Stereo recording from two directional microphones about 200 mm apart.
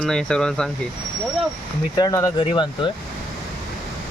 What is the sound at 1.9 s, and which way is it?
Speech, 20° left (ahead or behind).